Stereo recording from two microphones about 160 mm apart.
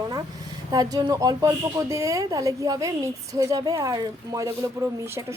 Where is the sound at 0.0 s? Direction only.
25° right (ahead or behind).